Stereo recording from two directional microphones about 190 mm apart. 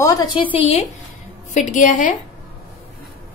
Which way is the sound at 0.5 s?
35° left (ahead or behind).